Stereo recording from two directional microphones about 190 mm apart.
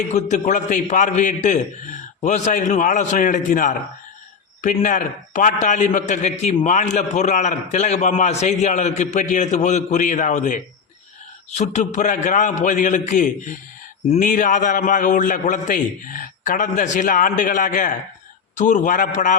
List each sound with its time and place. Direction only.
0.1 s a man's voice: 40° left (ahead or behind)